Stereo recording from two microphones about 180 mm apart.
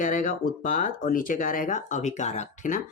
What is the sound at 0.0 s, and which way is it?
Speech, 45° left (ahead or behind).